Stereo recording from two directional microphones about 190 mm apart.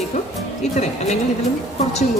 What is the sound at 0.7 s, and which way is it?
Speech, 35° left (ahead or behind).